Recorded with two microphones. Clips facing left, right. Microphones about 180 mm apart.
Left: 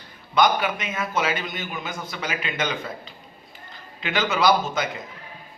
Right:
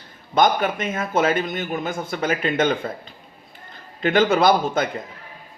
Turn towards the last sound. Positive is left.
turn(degrees=-55)  # may be behind; listen again after turning